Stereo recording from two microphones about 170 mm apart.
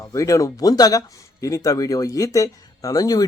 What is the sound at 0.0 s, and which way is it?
Speech, 20° left (ahead or behind).